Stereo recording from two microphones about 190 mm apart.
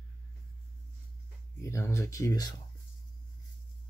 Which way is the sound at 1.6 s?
15° left (ahead or behind).